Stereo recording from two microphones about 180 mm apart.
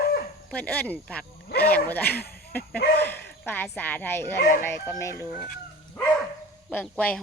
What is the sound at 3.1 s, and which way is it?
Speech, 10° left (ahead or behind).